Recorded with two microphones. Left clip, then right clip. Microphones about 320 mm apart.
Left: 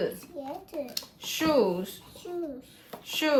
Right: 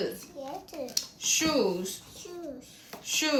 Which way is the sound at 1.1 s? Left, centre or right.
Left.